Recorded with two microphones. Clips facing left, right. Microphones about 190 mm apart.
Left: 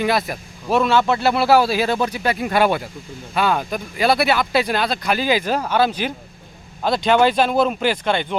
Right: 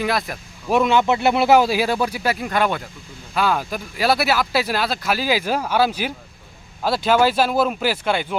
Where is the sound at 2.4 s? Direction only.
10° left (ahead or behind).